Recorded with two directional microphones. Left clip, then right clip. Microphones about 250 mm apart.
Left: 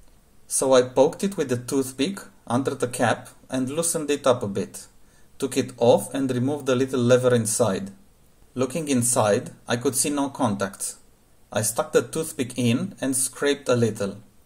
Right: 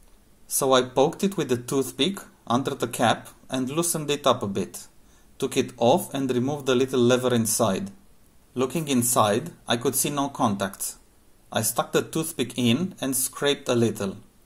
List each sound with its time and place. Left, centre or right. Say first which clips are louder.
0.6 s speech: left 2 dB; centre